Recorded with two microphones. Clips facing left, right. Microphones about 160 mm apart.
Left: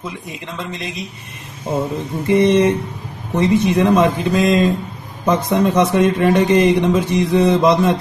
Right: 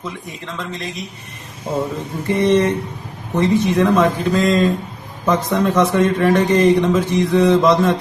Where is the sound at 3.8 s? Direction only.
15° left (ahead or behind).